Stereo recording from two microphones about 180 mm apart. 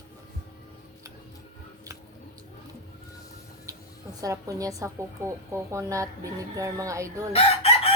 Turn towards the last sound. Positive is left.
turn(degrees=35)  # may be behind; listen again after turning